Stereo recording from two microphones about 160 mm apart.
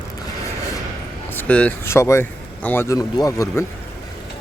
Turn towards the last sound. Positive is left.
turn(degrees=20)  # may be behind; listen again after turning